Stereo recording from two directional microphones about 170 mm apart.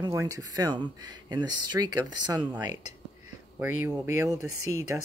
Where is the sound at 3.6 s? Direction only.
15° right (ahead or behind).